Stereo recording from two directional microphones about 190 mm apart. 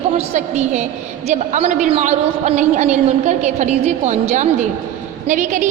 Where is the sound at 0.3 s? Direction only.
35° right (ahead or behind).